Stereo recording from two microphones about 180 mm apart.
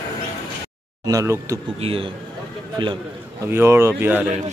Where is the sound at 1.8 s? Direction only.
30° right (ahead or behind).